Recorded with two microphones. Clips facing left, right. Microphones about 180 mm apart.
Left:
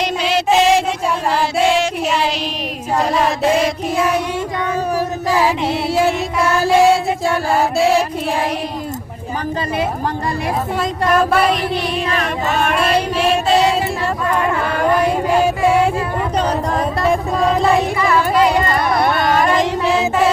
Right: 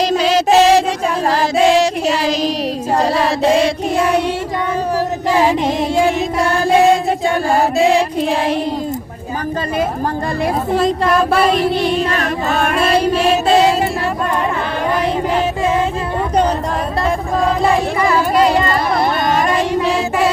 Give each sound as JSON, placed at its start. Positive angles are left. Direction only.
{"t": 0.0, "sound": "music", "side_deg": -40}
{"t": 1.3, "sound": "female singing", "side_deg": -40}
{"t": 3.0, "sound": "child singing", "side_deg": -35}
{"t": 10.8, "sound": "child singing", "side_deg": -30}
{"t": 18.1, "sound": "a sound", "side_deg": -25}